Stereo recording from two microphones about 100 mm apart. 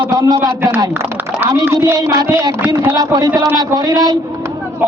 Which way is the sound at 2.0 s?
40° right (ahead or behind).